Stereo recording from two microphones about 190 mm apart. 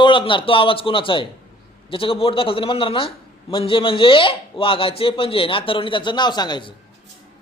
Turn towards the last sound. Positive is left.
turn(degrees=25)  # may be behind; listen again after turning